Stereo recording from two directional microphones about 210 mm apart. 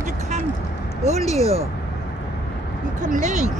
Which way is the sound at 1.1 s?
30° right (ahead or behind).